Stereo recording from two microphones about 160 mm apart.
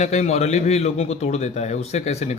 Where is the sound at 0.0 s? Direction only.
45° left (ahead or behind).